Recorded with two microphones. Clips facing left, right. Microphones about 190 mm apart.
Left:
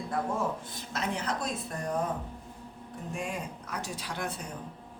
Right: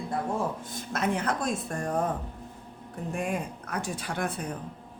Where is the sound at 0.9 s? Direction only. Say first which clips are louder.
Right 4 dB; 55° right (ahead or behind).